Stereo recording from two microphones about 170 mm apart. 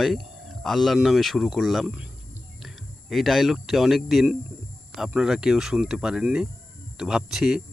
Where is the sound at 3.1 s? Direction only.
Centre (ahead or behind).